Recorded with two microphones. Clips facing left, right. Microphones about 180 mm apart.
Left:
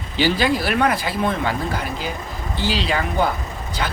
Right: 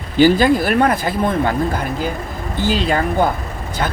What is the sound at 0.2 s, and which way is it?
Speech, 50° right (ahead or behind).